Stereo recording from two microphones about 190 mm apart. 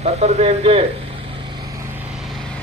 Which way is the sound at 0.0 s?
35° right (ahead or behind).